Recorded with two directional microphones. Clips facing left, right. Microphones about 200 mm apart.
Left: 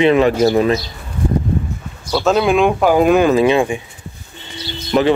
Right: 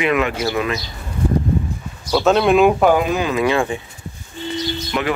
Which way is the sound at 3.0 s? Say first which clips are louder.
Left 9 dB; 55° left (ahead or behind).